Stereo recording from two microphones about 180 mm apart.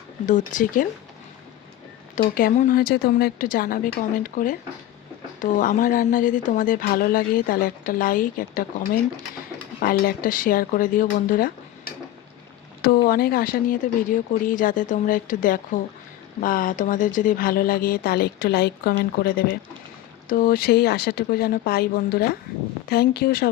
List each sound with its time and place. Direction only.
0.3 s speech: 45° left (ahead or behind)
2.1 s speech: 50° left (ahead or behind)